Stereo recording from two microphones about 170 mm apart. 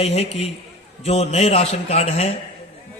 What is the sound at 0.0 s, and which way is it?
A man's voice, 40° left (ahead or behind).